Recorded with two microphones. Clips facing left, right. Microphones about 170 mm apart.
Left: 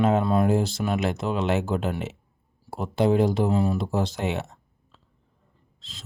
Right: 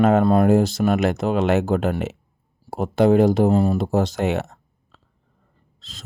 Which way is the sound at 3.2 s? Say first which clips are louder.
Right 6 dB; 45° right (ahead or behind).